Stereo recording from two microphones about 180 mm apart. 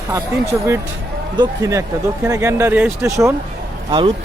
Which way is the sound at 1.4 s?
20° right (ahead or behind).